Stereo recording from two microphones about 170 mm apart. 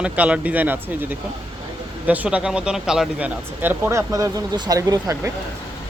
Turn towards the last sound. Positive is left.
turn(degrees=-20)  # may be behind; listen again after turning